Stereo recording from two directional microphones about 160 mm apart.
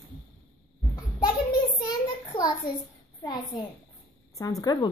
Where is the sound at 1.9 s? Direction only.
25° left (ahead or behind).